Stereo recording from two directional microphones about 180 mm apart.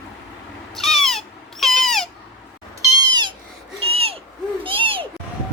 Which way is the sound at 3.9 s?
30° right (ahead or behind).